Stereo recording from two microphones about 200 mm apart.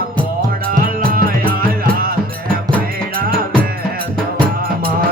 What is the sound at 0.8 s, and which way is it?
Music, 45° right (ahead or behind).